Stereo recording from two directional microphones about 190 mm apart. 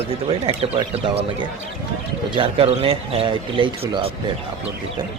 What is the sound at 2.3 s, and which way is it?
Speech, 30° right (ahead or behind).